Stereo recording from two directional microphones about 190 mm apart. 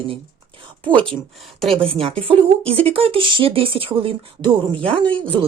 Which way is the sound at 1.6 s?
30° right (ahead or behind).